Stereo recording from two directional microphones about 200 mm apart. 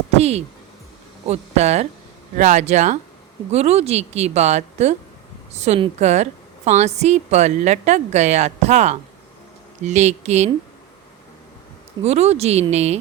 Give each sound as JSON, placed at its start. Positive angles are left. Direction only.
{"t": 0.2, "sound": "a woman's voice", "side_deg": -30}
{"t": 12.0, "sound": "a woman's voice", "side_deg": -30}